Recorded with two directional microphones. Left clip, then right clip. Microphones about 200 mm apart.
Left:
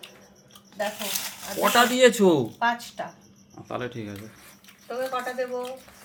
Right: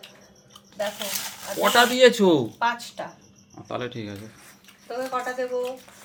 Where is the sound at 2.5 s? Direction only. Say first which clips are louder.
Even; 40° right (ahead or behind).